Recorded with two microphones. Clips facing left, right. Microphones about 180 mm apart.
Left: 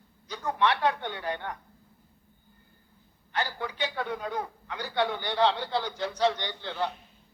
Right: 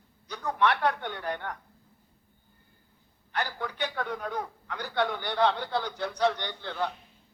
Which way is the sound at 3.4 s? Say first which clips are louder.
Left 1 dB; 10° left (ahead or behind).